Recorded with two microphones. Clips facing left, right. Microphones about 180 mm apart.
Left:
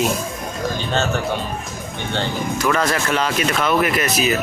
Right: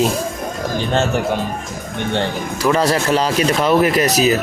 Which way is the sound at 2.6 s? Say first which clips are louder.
Right 5 dB; 35° right (ahead or behind).